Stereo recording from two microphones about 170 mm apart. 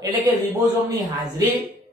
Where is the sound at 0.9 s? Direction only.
20° right (ahead or behind).